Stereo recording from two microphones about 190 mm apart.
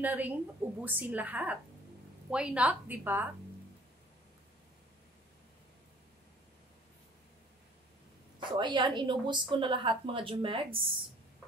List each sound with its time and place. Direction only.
0.0 s a woman's voice: 10° right (ahead or behind)
8.4 s a woman's voice: 25° right (ahead or behind)